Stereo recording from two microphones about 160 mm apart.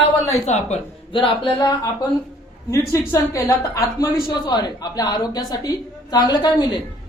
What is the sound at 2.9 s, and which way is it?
A woman's voice, 15° left (ahead or behind).